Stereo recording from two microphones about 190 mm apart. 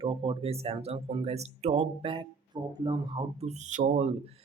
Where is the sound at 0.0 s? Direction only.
25° right (ahead or behind).